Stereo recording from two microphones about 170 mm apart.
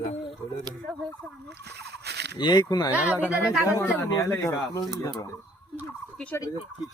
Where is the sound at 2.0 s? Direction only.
75° right (ahead or behind).